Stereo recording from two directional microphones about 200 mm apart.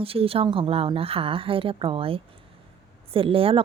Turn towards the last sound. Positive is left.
turn(degrees=-30)  # may be behind; listen again after turning